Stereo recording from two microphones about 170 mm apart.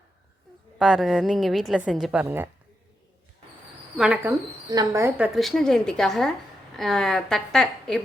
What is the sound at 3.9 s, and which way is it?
Speech, 5° right (ahead or behind).